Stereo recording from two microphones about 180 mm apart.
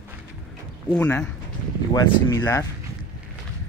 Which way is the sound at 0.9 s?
5° left (ahead or behind).